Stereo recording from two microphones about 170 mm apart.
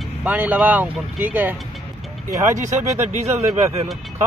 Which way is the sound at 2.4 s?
45° right (ahead or behind).